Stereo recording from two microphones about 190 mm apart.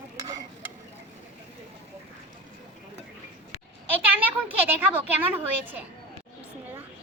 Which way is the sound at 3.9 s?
10° right (ahead or behind).